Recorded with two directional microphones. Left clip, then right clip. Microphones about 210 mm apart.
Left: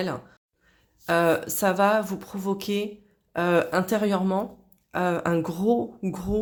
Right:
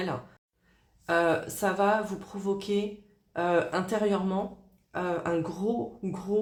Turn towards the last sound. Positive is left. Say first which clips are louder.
# left 1 dB
turn(degrees=35)  # may be behind; listen again after turning